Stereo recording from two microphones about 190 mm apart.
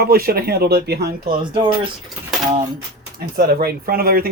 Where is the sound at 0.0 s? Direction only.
55° right (ahead or behind).